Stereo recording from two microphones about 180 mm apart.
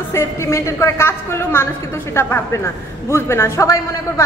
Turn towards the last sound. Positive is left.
turn(degrees=15)  # may be behind; listen again after turning